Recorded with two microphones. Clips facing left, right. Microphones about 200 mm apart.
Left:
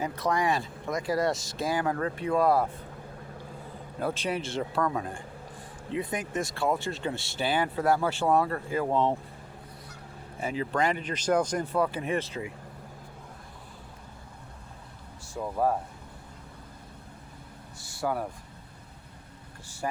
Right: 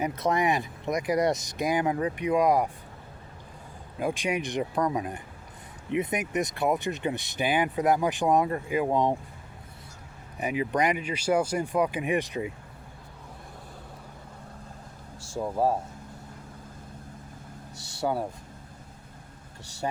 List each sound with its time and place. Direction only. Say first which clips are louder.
0.0 s speech: right 2 dB; 20° right (ahead or behind)
4.0 s speech: right 2 dB; 15° right (ahead or behind)
10.3 s speech: right 2 dB; 15° right (ahead or behind)
15.4 s speech: right 2 dB; 25° right (ahead or behind)
17.7 s vehicle: right 2 dB; 70° right (ahead or behind)
18.0 s speech: right 2 dB; 25° right (ahead or behind)
19.8 s speech: right 2 dB; 25° right (ahead or behind)